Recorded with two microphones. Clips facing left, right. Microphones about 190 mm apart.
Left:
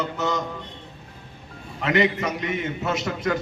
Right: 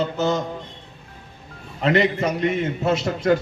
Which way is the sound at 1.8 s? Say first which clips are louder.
Right 3 dB; 35° right (ahead or behind).